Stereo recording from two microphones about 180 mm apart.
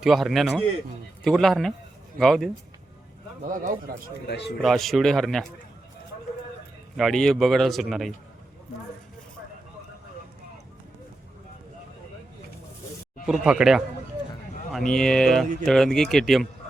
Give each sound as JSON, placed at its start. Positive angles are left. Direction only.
{"t": 0.0, "sound": "a man's voice", "side_deg": 0}
{"t": 3.5, "sound": "speech", "side_deg": -50}
{"t": 4.3, "sound": "a man's voice", "side_deg": 70}
{"t": 4.6, "sound": "a man's voice", "side_deg": 0}
{"t": 6.9, "sound": "a man's voice", "side_deg": 0}
{"t": 13.2, "sound": "a man's voice", "side_deg": -5}